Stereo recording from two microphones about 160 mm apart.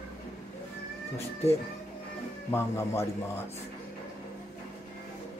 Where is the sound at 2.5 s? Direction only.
15° left (ahead or behind).